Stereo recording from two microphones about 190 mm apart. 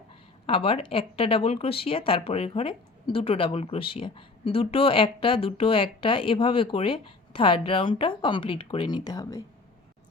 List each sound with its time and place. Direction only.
0.4 s speech: 30° left (ahead or behind)